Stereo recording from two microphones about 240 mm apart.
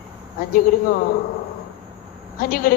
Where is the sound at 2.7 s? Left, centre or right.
Left.